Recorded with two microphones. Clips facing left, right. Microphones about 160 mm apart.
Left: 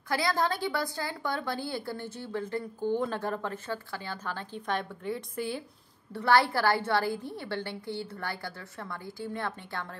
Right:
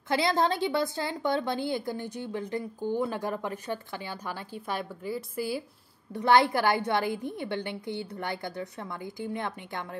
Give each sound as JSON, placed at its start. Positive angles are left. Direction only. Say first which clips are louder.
{"t": 0.1, "sound": "a woman's voice", "louder": "right 3 dB", "side_deg": -20}
{"t": 6.1, "sound": "a woman's voice", "louder": "right 2 dB", "side_deg": -20}